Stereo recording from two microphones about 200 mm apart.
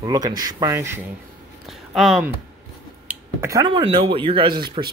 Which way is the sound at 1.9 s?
Centre (ahead or behind).